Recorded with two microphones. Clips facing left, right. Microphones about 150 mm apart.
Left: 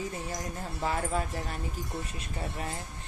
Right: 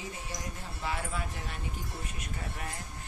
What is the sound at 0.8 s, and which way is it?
Speech, 40° left (ahead or behind).